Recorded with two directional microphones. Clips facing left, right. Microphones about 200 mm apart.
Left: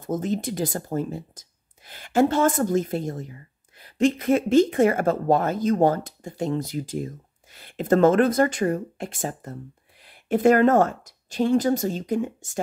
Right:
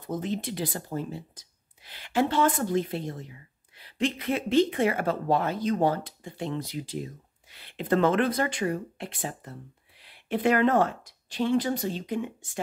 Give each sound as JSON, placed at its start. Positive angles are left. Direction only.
{"t": 0.0, "sound": "speech", "side_deg": 45}